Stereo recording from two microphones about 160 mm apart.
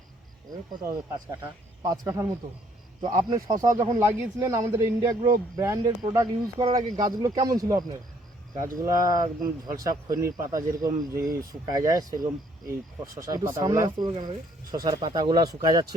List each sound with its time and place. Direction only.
1.3 s speech: 25° right (ahead or behind)